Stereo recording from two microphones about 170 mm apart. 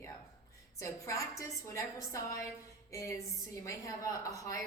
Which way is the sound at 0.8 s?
20° left (ahead or behind).